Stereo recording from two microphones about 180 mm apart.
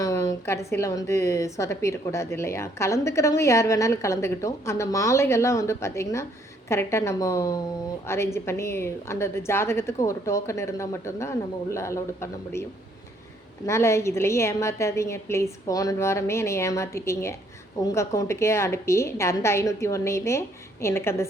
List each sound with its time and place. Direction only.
0.0 s a sound: 20° left (ahead or behind)
0.7 s a woman's voice: 15° left (ahead or behind)
13.7 s a woman's voice: 15° left (ahead or behind)